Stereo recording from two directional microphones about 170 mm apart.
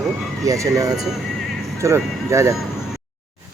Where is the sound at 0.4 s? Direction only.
20° right (ahead or behind).